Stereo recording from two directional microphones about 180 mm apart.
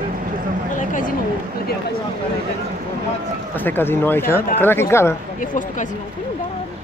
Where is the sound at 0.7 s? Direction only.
50° left (ahead or behind).